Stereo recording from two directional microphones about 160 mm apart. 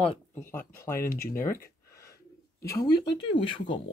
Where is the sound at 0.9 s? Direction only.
60° left (ahead or behind).